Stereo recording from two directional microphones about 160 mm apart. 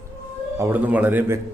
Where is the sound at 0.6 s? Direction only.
10° right (ahead or behind).